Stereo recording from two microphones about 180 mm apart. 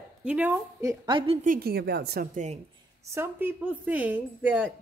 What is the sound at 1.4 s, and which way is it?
Speech, 55° right (ahead or behind).